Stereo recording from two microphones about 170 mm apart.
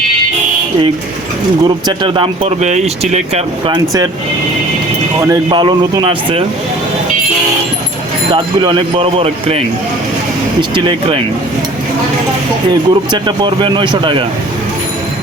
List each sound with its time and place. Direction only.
1.6 s speech: 30° right (ahead or behind)
3.7 s speech: 20° right (ahead or behind)
5.2 s speech: 25° right (ahead or behind)
8.3 s speech: 30° right (ahead or behind)
12.9 s speech: 25° right (ahead or behind)